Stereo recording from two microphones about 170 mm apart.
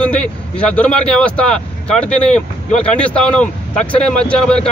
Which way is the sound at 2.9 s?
5° left (ahead or behind).